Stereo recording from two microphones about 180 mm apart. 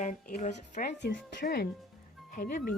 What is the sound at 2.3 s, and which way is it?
Speech, 45° left (ahead or behind).